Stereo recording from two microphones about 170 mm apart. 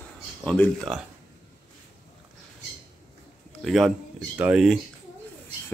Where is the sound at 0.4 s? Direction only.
5° left (ahead or behind).